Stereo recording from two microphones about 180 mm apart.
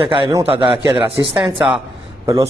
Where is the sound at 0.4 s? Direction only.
30° right (ahead or behind).